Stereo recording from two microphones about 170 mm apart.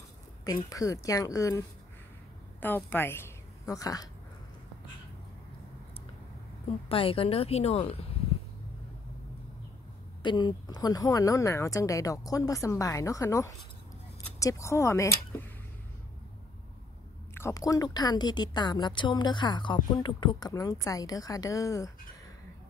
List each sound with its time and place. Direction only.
0.5 s a woman's voice: 20° left (ahead or behind)
6.9 s a woman's voice: 35° left (ahead or behind)
10.2 s a woman's voice: 25° left (ahead or behind)
17.3 s a woman's voice: 15° left (ahead or behind)